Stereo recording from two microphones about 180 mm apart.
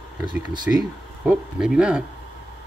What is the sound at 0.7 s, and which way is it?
Speech, 10° right (ahead or behind).